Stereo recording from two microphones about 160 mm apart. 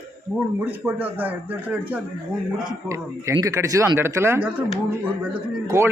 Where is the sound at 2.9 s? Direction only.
20° right (ahead or behind).